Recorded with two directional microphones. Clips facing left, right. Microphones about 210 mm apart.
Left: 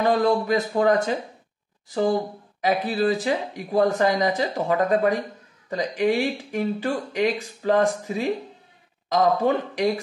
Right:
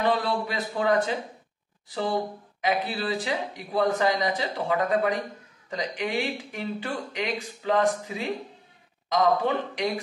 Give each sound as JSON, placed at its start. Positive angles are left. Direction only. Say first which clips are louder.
{"t": 0.0, "sound": "speech", "louder": "left 5 dB", "side_deg": 45}
{"t": 2.6, "sound": "a man's voice", "louder": "left 6 dB", "side_deg": 40}